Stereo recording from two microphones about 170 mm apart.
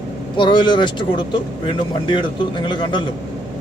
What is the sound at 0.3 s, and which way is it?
Speech, 30° left (ahead or behind).